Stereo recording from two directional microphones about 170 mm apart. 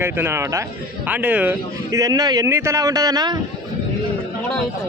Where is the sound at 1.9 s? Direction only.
20° right (ahead or behind).